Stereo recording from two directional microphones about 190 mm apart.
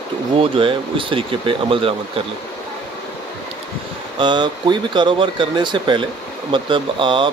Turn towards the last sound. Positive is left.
turn(degrees=-25)  # may be behind; listen again after turning